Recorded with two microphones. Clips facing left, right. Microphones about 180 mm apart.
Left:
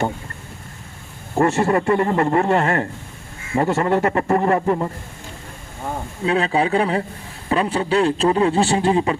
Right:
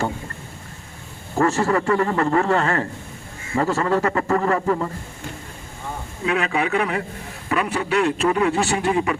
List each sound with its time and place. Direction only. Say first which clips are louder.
1.4 s a man's voice: left 2 dB; 30° left (ahead or behind)
6.2 s a man's voice: left 3 dB; 30° left (ahead or behind)